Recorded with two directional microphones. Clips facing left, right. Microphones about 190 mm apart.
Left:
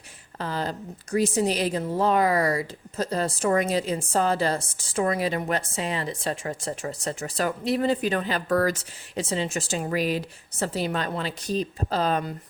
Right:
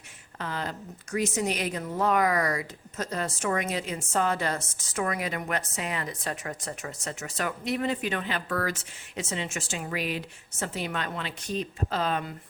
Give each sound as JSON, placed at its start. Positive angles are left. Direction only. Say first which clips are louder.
{"t": 0.3, "sound": "a woman's voice", "louder": "left 4 dB", "side_deg": 35}